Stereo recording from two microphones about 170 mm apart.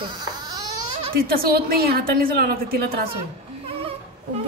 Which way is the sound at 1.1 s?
60° right (ahead or behind).